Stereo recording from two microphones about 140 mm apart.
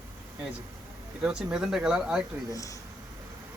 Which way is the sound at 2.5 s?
25° left (ahead or behind).